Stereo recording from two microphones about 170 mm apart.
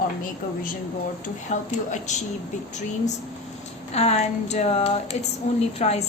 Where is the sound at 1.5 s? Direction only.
45° left (ahead or behind).